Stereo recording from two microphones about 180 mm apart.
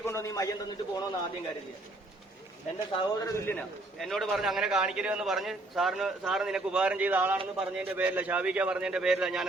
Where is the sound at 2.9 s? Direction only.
20° left (ahead or behind).